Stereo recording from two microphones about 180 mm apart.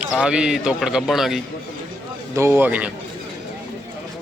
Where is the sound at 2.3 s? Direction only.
15° right (ahead or behind).